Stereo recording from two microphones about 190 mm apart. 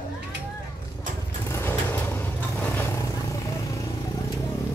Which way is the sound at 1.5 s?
10° left (ahead or behind).